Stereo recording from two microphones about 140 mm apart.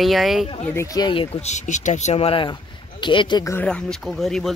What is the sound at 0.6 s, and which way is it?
Speech, 20° left (ahead or behind).